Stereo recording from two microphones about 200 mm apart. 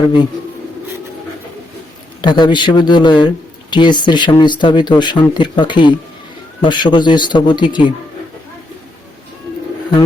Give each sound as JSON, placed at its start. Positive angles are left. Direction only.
{"t": 2.2, "sound": "speech", "side_deg": 25}